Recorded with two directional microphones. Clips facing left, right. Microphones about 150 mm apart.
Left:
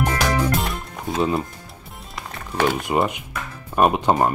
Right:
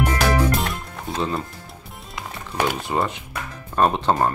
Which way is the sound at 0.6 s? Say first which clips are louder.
Even; centre (ahead or behind).